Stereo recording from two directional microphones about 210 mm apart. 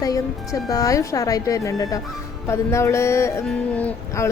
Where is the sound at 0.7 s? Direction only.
15° left (ahead or behind).